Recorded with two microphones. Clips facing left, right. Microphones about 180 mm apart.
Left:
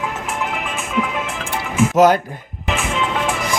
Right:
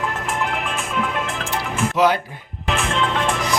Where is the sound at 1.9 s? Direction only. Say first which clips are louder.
Left 5 dB; 45° left (ahead or behind).